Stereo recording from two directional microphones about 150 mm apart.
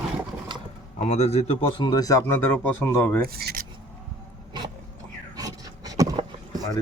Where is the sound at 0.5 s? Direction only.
35° right (ahead or behind).